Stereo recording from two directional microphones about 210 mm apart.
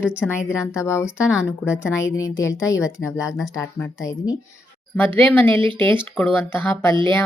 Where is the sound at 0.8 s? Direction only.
15° left (ahead or behind).